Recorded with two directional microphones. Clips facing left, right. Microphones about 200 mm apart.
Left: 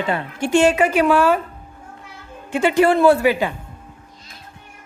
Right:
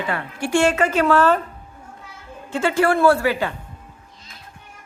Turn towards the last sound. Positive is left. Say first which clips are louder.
# left 3 dB
turn(degrees=15)  # may be behind; listen again after turning